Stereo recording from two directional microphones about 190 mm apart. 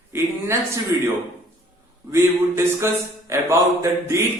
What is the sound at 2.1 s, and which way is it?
Speech, 15° right (ahead or behind).